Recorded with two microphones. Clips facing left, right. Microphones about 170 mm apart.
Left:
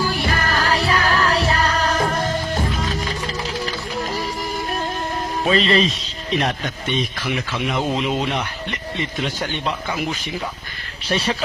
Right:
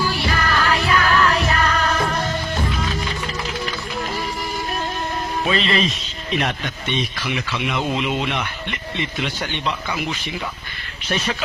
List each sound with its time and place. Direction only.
0.0 s music: 45° left (ahead or behind)
5.4 s speech: 40° left (ahead or behind)
11.1 s speech: 35° left (ahead or behind)